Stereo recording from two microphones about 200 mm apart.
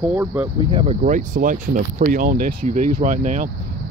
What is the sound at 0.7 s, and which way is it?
Speech, 25° right (ahead or behind).